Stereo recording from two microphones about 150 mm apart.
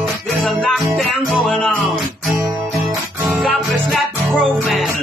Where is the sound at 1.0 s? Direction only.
Centre (ahead or behind).